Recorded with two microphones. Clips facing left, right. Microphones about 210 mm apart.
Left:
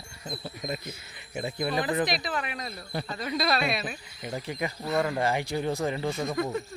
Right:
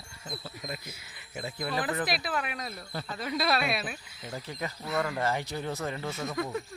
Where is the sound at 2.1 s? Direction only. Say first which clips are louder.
Left 1 dB; 5° right (ahead or behind).